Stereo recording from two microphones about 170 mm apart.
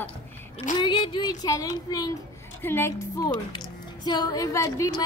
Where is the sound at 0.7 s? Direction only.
30° left (ahead or behind).